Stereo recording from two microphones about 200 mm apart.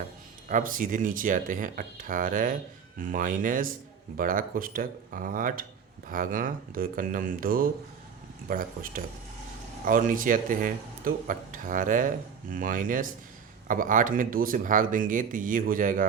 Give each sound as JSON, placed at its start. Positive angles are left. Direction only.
{"t": 0.4, "sound": "speech", "side_deg": -40}